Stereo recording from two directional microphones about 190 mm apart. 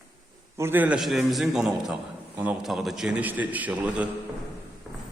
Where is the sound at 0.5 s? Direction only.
10° right (ahead or behind).